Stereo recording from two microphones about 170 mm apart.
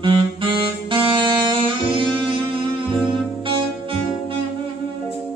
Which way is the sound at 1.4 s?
30° right (ahead or behind).